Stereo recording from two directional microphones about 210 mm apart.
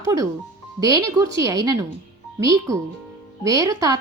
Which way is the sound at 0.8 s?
15° right (ahead or behind).